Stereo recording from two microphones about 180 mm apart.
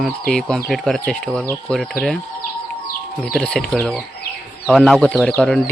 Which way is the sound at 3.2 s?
5° left (ahead or behind).